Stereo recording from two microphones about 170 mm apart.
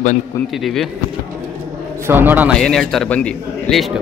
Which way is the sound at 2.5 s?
5° left (ahead or behind).